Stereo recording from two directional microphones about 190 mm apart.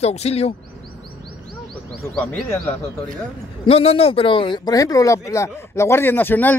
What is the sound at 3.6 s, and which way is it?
Speech, 30° left (ahead or behind).